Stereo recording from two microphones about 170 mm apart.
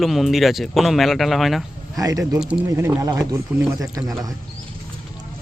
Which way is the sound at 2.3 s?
10° right (ahead or behind).